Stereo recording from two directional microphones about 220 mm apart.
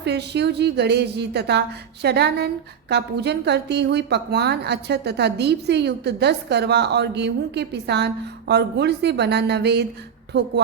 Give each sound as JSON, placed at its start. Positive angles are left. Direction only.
{"t": 0.0, "sound": "a woman's voice", "side_deg": -50}